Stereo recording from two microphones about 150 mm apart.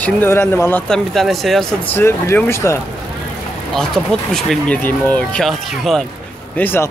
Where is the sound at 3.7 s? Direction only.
5° left (ahead or behind).